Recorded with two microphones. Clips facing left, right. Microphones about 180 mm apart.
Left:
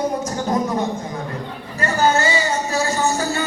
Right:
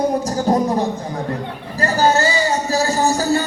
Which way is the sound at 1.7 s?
35° right (ahead or behind).